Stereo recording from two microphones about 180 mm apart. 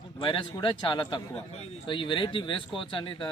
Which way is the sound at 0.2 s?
30° left (ahead or behind).